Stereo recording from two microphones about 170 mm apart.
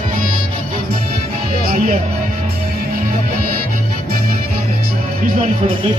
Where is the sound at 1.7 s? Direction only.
55° right (ahead or behind).